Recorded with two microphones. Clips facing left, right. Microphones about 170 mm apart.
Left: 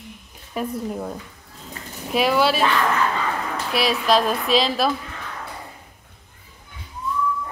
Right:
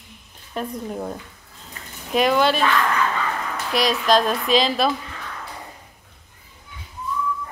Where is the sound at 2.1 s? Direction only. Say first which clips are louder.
Right 1 dB; 5° left (ahead or behind).